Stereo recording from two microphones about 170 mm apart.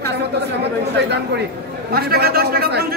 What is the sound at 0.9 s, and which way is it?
Speech, 90° right.